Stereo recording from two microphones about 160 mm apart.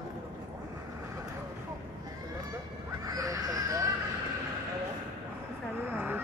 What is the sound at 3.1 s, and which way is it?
Music, 20° right (ahead or behind).